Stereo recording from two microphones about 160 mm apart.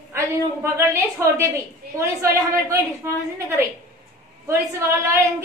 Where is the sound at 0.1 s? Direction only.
15° right (ahead or behind).